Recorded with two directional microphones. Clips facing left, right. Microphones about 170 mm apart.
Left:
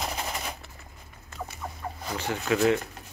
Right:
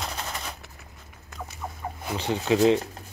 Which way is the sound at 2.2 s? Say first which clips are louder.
Right 4 dB; 20° right (ahead or behind).